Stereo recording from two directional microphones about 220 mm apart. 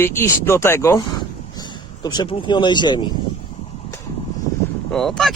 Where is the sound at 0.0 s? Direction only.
10° left (ahead or behind).